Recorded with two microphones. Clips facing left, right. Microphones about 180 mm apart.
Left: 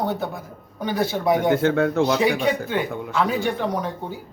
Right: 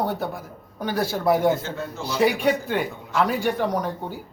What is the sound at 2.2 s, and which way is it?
Speech, 10° right (ahead or behind).